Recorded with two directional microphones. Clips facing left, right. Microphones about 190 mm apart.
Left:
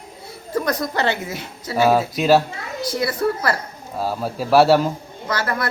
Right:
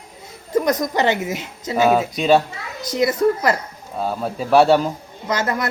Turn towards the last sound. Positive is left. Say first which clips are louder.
# right 2 dB
turn(degrees=-20)  # may be behind; listen again after turning